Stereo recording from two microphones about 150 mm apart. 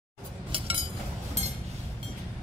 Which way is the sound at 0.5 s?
35° right (ahead or behind).